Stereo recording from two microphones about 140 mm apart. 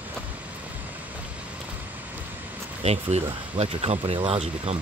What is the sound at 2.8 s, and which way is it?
Speech, 50° right (ahead or behind).